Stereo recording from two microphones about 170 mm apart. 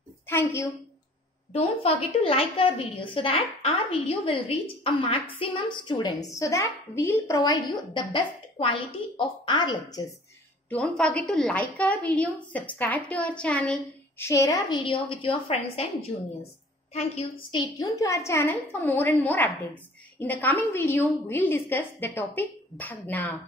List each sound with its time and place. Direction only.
0.3 s a woman's voice: 15° left (ahead or behind)
1.5 s a woman's voice: 35° left (ahead or behind)
10.7 s a woman's voice: 5° left (ahead or behind); by 15.8 s 35° left (ahead or behind)
16.9 s a woman's voice: 30° left (ahead or behind); by 23.3 s 10° left (ahead or behind)